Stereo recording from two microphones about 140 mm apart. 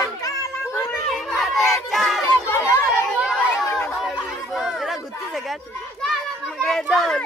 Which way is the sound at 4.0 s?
5° right (ahead or behind).